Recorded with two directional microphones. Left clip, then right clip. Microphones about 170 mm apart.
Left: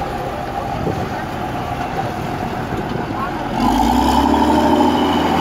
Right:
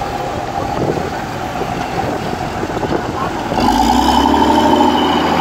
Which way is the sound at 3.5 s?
10° left (ahead or behind).